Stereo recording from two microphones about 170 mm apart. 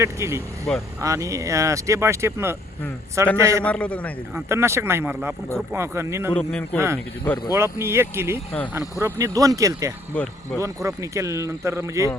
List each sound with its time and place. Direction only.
0.0 s speech: 15° right (ahead or behind)
0.7 s speech: centre (ahead or behind)
1.0 s speech: 20° right (ahead or behind)
3.6 s a man's voice: 5° left (ahead or behind)
4.4 s speech: 15° right (ahead or behind)
6.3 s a man's voice: 5° left (ahead or behind)
7.5 s speech: 15° right (ahead or behind)
10.1 s a man's voice: 10° left (ahead or behind)
10.8 s speech: 15° right (ahead or behind)